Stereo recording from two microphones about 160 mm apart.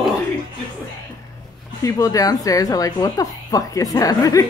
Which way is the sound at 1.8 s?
20° left (ahead or behind).